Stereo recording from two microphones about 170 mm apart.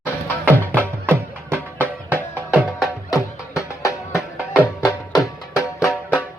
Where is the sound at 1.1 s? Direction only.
10° right (ahead or behind).